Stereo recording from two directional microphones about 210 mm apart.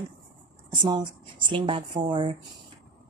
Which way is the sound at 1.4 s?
25° right (ahead or behind).